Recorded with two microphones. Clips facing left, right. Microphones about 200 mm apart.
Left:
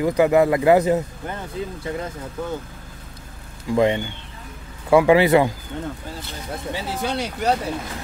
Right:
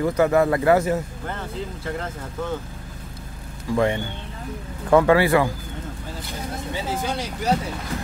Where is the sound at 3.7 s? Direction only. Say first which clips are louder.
Left 3 dB; 20° left (ahead or behind).